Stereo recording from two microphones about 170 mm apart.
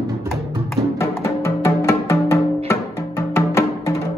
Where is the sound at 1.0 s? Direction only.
15° left (ahead or behind).